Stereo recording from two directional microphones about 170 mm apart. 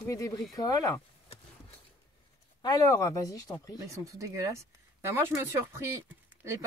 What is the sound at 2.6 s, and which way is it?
Speech, 20° left (ahead or behind).